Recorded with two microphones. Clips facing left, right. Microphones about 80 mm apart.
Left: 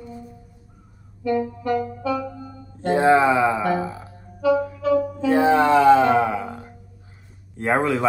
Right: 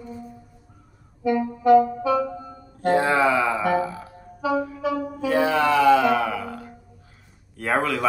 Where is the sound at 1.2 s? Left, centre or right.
Centre.